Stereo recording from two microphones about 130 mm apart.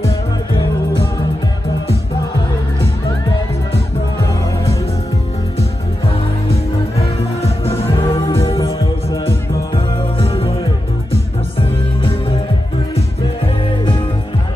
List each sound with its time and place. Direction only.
7.4 s music: 50° left (ahead or behind)
10.1 s music: 50° left (ahead or behind)
12.0 s music: 45° left (ahead or behind)
13.7 s music: 40° left (ahead or behind)